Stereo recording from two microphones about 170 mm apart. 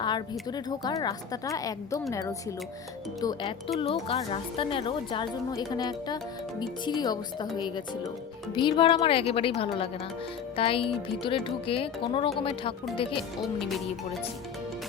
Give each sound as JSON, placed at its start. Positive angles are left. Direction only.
{"t": 0.0, "sound": "a woman's voice", "side_deg": 25}
{"t": 8.5, "sound": "a woman's voice", "side_deg": 30}
{"t": 13.4, "sound": "speech", "side_deg": 0}